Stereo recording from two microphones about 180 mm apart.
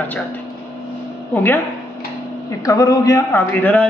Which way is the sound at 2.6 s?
20° left (ahead or behind).